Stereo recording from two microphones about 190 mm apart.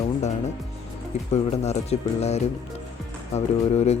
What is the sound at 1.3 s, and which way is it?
Speech, 35° left (ahead or behind).